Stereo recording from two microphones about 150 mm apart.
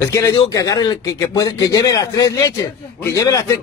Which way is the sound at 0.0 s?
20° left (ahead or behind).